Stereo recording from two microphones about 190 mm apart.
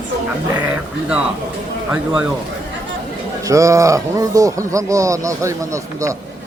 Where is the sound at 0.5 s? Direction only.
5° right (ahead or behind).